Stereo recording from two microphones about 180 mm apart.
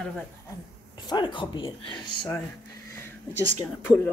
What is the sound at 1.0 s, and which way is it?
Speech, 25° left (ahead or behind).